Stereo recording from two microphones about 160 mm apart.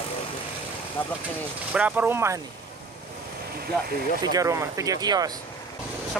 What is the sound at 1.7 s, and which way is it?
Speech, 10° right (ahead or behind).